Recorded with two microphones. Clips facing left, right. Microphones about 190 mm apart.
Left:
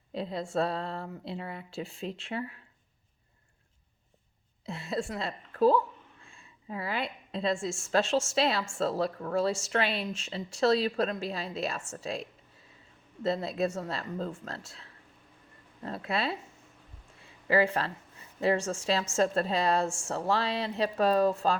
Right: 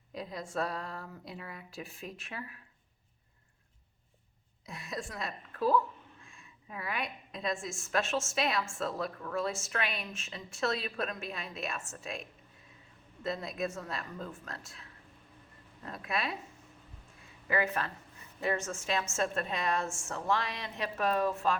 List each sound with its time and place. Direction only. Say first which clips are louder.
0.1 s speech: left 6 dB; 30° left (ahead or behind)
4.6 s a woman's voice: left 7 dB; 30° left (ahead or behind)
15.8 s speech: left 4 dB; 30° left (ahead or behind)
17.5 s a woman's voice: left 6 dB; 30° left (ahead or behind)